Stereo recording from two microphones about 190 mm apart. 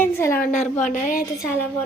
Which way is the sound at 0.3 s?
40° left (ahead or behind).